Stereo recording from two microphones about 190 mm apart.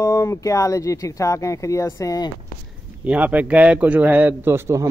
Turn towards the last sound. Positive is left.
turn(degrees=-15)  # may be behind; listen again after turning